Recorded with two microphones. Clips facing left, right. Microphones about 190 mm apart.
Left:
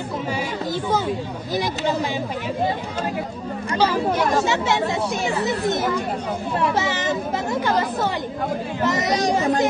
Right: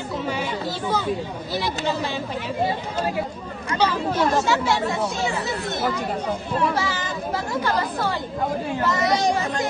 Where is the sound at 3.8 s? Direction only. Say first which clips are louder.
Left 1 dB; 15° left (ahead or behind).